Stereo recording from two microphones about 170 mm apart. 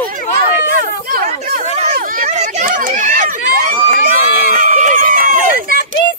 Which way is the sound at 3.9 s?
50° right (ahead or behind).